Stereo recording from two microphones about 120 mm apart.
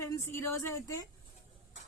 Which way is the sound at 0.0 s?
20° left (ahead or behind).